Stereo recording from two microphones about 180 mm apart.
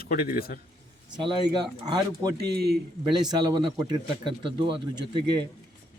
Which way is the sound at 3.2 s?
25° right (ahead or behind).